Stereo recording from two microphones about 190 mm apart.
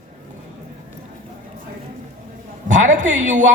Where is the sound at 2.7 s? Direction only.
40° right (ahead or behind).